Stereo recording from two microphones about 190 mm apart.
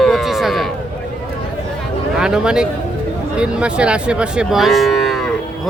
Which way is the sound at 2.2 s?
5° right (ahead or behind).